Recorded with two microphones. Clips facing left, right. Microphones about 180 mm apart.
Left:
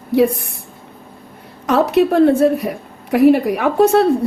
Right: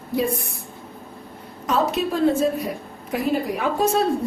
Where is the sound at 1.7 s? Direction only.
70° left (ahead or behind).